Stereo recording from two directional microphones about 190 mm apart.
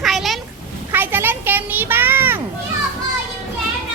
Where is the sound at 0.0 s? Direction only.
Centre (ahead or behind).